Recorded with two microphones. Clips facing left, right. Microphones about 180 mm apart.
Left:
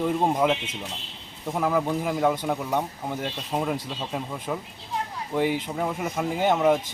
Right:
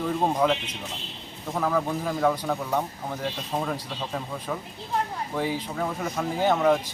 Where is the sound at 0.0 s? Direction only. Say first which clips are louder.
Left 1 dB; 20° left (ahead or behind).